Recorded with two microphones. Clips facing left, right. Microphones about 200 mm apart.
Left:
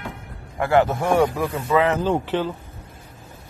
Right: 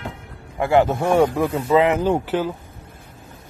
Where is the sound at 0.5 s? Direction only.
15° right (ahead or behind).